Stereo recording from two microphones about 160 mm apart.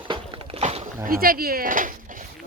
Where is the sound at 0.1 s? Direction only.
40° right (ahead or behind).